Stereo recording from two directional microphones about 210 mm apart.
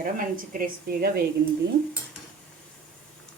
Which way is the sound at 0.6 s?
45° right (ahead or behind).